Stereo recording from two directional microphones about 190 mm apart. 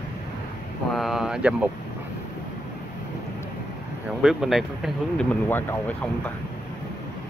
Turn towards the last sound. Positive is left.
turn(degrees=10)  # may be behind; listen again after turning